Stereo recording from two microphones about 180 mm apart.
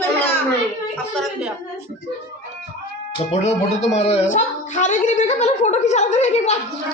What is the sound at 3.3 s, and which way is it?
A child's voice, 35° left (ahead or behind).